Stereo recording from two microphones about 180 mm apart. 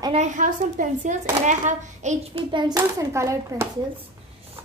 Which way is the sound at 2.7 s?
15° right (ahead or behind).